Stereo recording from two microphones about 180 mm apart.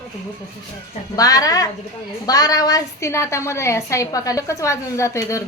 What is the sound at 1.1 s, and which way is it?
A woman's voice, 20° left (ahead or behind).